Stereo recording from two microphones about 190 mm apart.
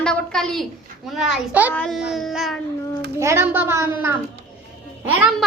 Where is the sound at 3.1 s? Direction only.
15° right (ahead or behind).